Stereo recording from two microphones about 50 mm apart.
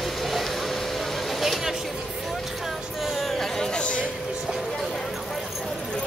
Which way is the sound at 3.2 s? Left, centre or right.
Centre.